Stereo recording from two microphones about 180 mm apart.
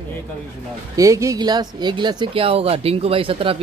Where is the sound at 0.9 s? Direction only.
15° right (ahead or behind).